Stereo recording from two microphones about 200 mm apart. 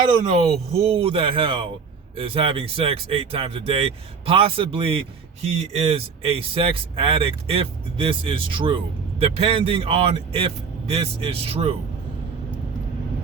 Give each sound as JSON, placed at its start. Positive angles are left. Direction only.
{"t": 0.2, "sound": "speech", "side_deg": -35}